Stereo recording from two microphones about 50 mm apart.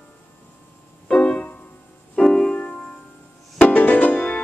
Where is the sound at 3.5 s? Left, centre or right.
Left.